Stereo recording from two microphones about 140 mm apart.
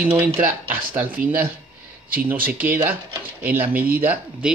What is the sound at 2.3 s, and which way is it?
Speech, 90° right.